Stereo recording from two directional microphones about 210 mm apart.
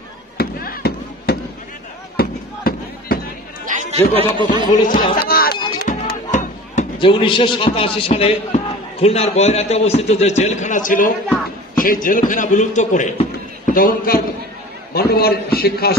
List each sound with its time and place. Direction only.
0.4 s fireworks: 45° left (ahead or behind)
2.1 s a sound: 45° left (ahead or behind)
3.6 s chatter: 35° right (ahead or behind)
4.1 s speech: 25° right (ahead or behind)
4.8 s chatter: 45° left (ahead or behind)
5.9 s music: 40° left (ahead or behind)
6.3 s a sound: 35° left (ahead or behind)
7.0 s a man's voice: 25° left (ahead or behind); by 16.0 s 45° left (ahead or behind)